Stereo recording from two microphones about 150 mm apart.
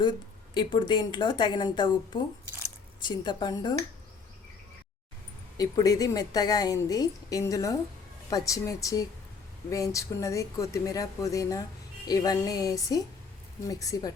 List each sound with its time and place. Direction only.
0.5 s a woman's voice: 35° left (ahead or behind)
5.5 s a woman's voice: 25° left (ahead or behind)